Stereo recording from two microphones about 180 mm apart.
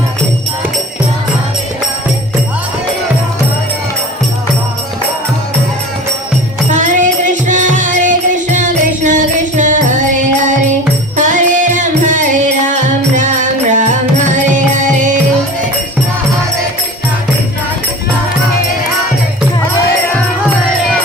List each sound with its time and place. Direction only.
6.7 s music: 45° right (ahead or behind)
11.2 s music: 45° right (ahead or behind)